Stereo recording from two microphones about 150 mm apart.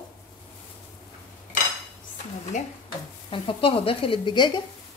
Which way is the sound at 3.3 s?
35° left (ahead or behind).